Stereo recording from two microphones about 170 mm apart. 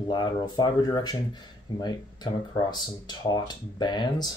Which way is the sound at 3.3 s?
25° left (ahead or behind).